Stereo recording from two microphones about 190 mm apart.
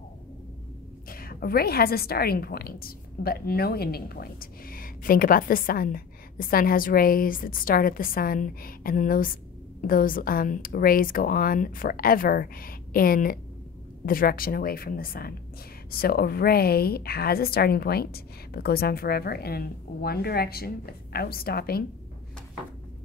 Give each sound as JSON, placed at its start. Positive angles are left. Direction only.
{"t": 1.0, "sound": "a woman's voice", "side_deg": 50}